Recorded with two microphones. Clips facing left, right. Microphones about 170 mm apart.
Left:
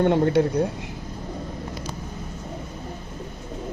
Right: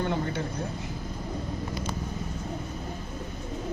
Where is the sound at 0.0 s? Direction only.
65° left (ahead or behind).